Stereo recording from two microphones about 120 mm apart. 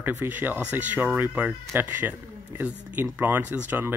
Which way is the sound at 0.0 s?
15° right (ahead or behind).